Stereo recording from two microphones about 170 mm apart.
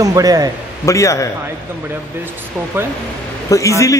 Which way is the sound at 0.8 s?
20° left (ahead or behind).